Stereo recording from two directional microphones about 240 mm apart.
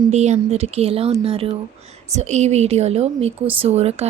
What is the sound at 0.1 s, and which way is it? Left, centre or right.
A woman's voice, right.